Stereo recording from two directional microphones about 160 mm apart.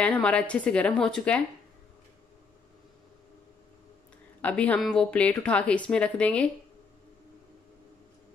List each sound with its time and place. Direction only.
0.0 s a woman's voice: 10° left (ahead or behind)
4.4 s a woman's voice: 10° left (ahead or behind)